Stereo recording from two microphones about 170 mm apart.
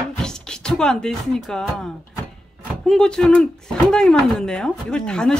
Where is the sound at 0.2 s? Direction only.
5° left (ahead or behind).